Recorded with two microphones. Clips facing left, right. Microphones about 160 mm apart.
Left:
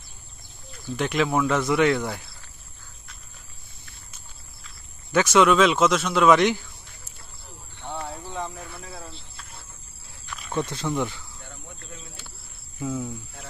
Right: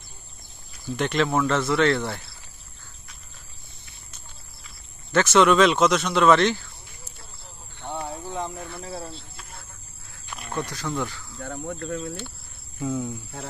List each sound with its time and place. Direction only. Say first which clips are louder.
0.7 s speech: right 1 dB; centre (ahead or behind)
5.1 s speech: even; 10° left (ahead or behind)
7.8 s a sound: right 2 dB; 20° right (ahead or behind)
8.8 s cricket: right 5 dB; 35° right (ahead or behind)
10.9 s speech: left 2 dB; 20° left (ahead or behind)
11.4 s cricket: right 16 dB; 55° right (ahead or behind)
12.7 s speech: right 2 dB; centre (ahead or behind)